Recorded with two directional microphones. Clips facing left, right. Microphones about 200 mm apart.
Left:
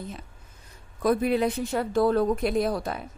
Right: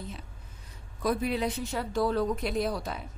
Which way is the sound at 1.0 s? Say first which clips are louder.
Left 6 dB; 55° left (ahead or behind).